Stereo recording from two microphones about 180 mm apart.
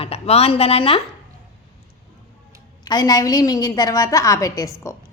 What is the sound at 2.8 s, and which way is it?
A woman's voice, 20° left (ahead or behind).